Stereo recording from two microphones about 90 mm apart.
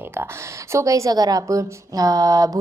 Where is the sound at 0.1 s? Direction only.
30° right (ahead or behind).